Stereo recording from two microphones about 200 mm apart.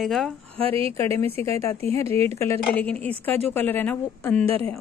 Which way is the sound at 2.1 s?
10° left (ahead or behind).